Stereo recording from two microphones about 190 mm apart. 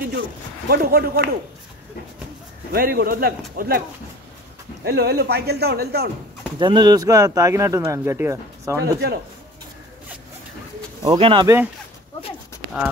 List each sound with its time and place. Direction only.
0.7 s a man's voice: 55° right (ahead or behind)
2.7 s a man's voice: 55° right (ahead or behind)
4.8 s a man's voice: 60° right (ahead or behind)
6.6 s speech: 25° right (ahead or behind)
11.0 s speech: 25° right (ahead or behind)
11.4 s speech: 15° right (ahead or behind)